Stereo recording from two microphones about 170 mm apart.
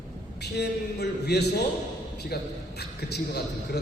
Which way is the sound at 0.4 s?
80° left.